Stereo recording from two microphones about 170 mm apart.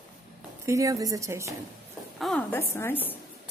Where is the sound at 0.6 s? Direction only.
20° right (ahead or behind).